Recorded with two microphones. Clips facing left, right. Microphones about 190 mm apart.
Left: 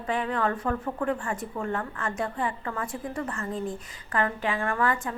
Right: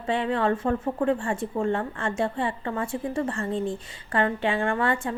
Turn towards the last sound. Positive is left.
turn(degrees=-30)  # may be behind; listen again after turning